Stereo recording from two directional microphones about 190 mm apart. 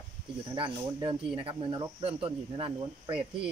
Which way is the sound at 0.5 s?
25° right (ahead or behind).